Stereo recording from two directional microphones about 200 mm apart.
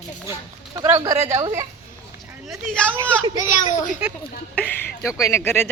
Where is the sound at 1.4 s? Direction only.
15° right (ahead or behind).